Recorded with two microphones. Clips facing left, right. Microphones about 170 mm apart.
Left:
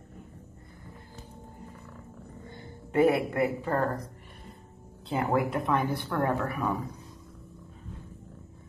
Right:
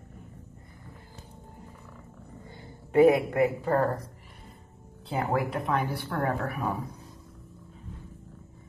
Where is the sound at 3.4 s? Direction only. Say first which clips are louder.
Right 3 dB; 5° right (ahead or behind).